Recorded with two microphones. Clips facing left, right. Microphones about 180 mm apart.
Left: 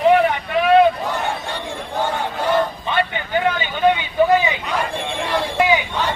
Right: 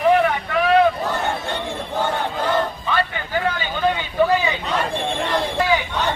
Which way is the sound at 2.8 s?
20° left (ahead or behind).